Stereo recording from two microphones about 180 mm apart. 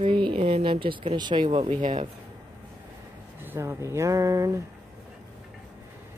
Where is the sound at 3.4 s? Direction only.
15° right (ahead or behind).